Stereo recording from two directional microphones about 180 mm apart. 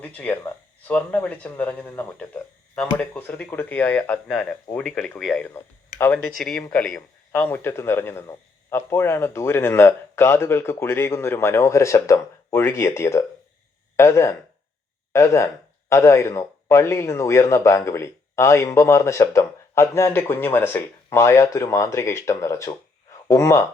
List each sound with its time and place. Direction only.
0.0 s a man's voice: 10° left (ahead or behind)
6.3 s a man's voice: centre (ahead or behind)